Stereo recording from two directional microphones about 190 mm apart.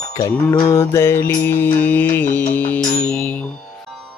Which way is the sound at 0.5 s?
25° left (ahead or behind).